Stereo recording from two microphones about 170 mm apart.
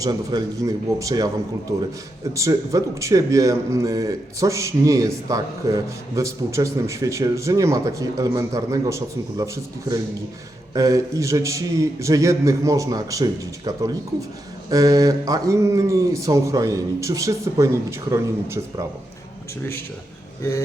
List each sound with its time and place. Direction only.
0.0 s speech: 25° right (ahead or behind)
2.3 s speech: 20° right (ahead or behind)
10.8 s speech: 20° right (ahead or behind)